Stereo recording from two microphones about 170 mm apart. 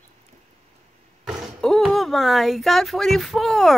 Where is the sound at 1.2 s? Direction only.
5° right (ahead or behind).